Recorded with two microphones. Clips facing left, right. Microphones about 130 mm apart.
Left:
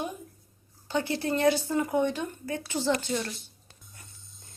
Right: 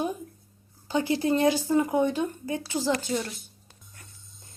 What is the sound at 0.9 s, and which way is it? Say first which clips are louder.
Speech: right 4 dB; 15° right (ahead or behind).